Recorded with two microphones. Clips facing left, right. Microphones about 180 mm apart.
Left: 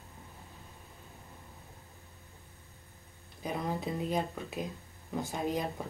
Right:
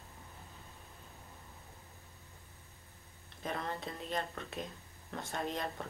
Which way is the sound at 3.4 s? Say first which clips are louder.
Left 5 dB; 5° left (ahead or behind).